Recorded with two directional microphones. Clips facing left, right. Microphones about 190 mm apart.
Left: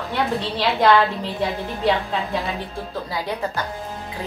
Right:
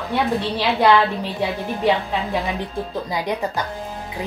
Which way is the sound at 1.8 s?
15° right (ahead or behind).